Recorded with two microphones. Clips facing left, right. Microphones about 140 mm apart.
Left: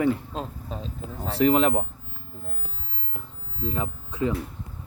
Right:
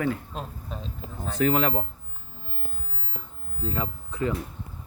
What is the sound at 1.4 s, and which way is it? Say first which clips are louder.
Speech: left 3 dB; 15° left (ahead or behind).